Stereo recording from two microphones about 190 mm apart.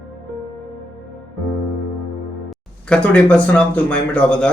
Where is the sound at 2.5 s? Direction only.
5° left (ahead or behind).